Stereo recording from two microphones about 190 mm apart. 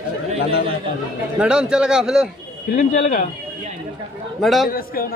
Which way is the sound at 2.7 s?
45° left (ahead or behind).